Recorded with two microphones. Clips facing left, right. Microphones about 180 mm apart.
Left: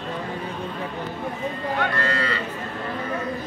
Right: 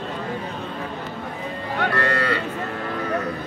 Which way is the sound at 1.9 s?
65° right (ahead or behind).